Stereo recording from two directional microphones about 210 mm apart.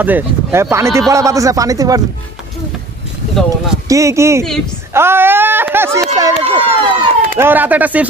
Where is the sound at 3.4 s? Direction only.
Centre (ahead or behind).